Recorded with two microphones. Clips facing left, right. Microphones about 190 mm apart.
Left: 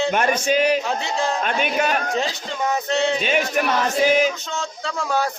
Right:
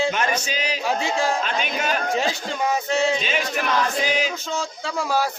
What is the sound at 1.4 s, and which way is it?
Speech, 55° left (ahead or behind).